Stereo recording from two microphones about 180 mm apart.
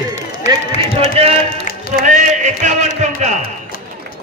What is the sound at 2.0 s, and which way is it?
Speech, 40° right (ahead or behind).